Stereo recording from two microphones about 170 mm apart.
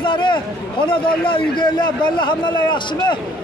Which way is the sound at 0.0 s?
30° left (ahead or behind).